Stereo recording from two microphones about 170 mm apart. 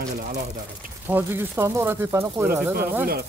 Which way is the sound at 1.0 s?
10° right (ahead or behind).